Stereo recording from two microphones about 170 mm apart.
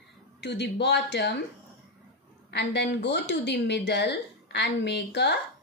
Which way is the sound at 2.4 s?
85° left.